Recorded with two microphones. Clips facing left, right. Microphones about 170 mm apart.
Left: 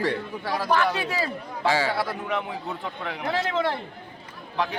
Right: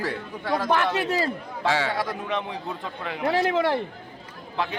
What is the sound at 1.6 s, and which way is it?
Speech, centre (ahead or behind).